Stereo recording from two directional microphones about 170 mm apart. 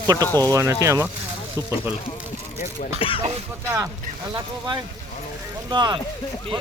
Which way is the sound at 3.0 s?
30° left (ahead or behind).